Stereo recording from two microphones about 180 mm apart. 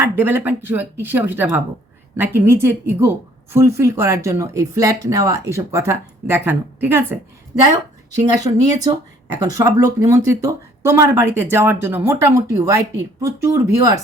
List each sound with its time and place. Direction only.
0.0 s speech: 15° right (ahead or behind)